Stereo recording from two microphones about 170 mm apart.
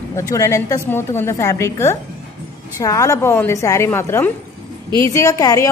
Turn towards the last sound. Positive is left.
turn(degrees=20)  # may be behind; listen again after turning